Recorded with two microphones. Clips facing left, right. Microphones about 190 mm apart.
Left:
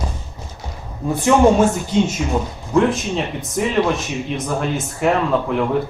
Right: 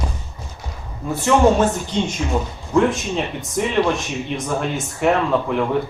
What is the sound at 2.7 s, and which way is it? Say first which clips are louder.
Speech: left 1 dB; centre (ahead or behind).